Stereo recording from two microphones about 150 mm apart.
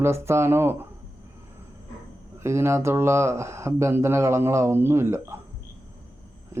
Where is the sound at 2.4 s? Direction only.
20° right (ahead or behind).